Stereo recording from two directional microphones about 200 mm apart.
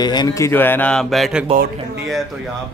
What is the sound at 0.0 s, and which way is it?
Speech, 20° left (ahead or behind).